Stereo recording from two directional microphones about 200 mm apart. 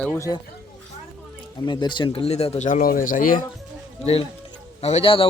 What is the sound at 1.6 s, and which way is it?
Speech, 20° left (ahead or behind).